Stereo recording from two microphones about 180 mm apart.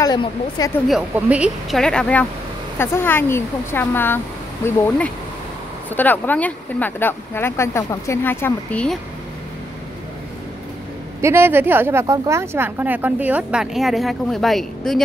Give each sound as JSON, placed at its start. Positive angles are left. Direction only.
{"t": 0.0, "sound": "speech", "side_deg": 20}
{"t": 0.8, "sound": "speech", "side_deg": -5}
{"t": 11.1, "sound": "speech", "side_deg": -15}